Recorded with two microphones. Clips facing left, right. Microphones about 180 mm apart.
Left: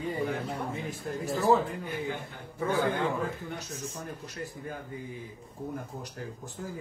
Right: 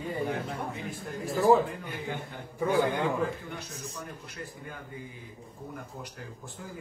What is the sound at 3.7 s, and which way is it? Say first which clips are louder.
Speech: left 2 dB; 35° left (ahead or behind).